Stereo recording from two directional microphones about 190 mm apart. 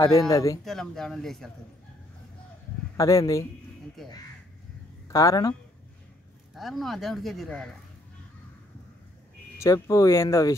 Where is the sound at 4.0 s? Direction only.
Centre (ahead or behind).